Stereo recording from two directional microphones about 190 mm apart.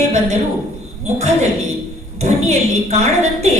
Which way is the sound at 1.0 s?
35° right (ahead or behind).